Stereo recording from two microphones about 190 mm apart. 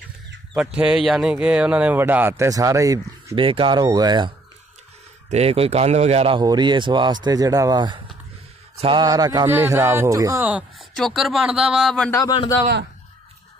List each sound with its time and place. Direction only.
0.6 s speech: 5° right (ahead or behind); by 4.3 s 20° right (ahead or behind)
5.3 s speech: 30° right (ahead or behind); by 12.2 s 5° left (ahead or behind)
12.2 s a man's voice: 20° left (ahead or behind)